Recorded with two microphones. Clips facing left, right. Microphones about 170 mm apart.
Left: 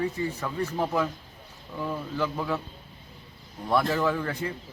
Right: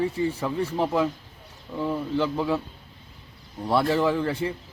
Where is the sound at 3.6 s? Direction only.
30° right (ahead or behind).